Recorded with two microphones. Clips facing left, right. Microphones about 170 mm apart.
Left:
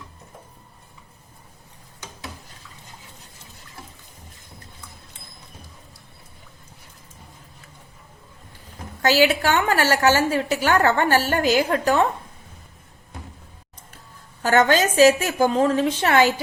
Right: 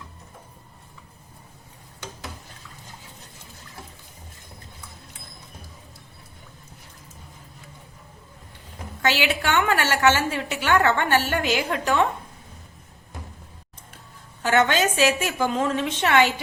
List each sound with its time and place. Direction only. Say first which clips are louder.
9.0 s a woman's voice: left 6 dB; 40° left (ahead or behind)
14.4 s a woman's voice: left 3 dB; 40° left (ahead or behind)